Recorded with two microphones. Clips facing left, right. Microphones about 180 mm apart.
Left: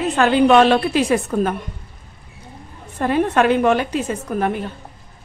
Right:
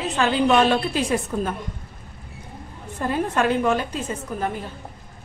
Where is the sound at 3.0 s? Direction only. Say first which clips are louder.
Left 5 dB; 75° left (ahead or behind).